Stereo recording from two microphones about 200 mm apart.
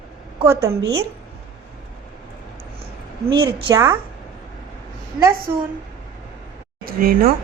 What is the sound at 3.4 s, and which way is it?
Speech, 15° right (ahead or behind).